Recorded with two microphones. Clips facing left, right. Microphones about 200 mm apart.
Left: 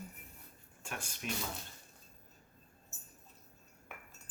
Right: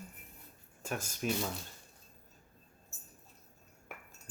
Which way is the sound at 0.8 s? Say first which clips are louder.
Right 7 dB; 40° right (ahead or behind).